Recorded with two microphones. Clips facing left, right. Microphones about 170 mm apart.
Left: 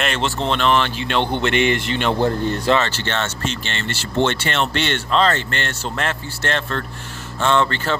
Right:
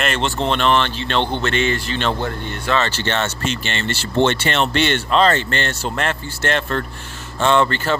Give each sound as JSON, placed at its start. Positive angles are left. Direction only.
{"t": 0.0, "sound": "speech", "side_deg": 0}
{"t": 2.1, "sound": "a man's voice", "side_deg": 35}
{"t": 3.1, "sound": "speech", "side_deg": -15}
{"t": 5.9, "sound": "speech", "side_deg": 0}